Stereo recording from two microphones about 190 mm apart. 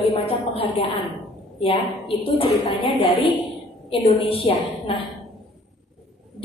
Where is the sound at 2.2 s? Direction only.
30° left (ahead or behind).